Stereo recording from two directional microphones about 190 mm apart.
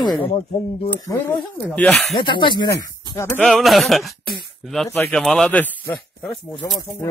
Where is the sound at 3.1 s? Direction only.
15° left (ahead or behind).